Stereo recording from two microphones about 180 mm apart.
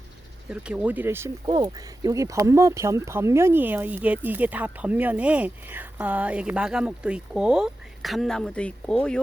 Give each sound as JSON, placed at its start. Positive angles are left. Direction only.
{"t": 0.5, "sound": "speech", "side_deg": -5}
{"t": 1.5, "sound": "speech", "side_deg": -25}